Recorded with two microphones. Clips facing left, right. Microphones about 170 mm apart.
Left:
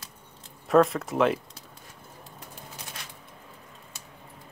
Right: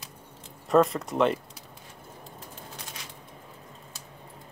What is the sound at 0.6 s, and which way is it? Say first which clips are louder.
Speech: left 1 dB; centre (ahead or behind).